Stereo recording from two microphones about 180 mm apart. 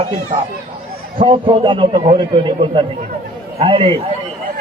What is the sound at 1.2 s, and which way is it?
A man's voice, 30° right (ahead or behind).